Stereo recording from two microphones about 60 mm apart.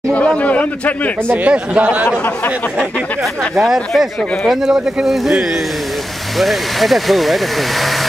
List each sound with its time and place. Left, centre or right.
0.1 s speech: left
1.3 s a man's voice: right
2.0 s speech: left
3.5 s speech: centre